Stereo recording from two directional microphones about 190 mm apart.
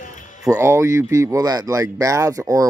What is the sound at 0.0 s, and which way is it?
Music, 40° left (ahead or behind).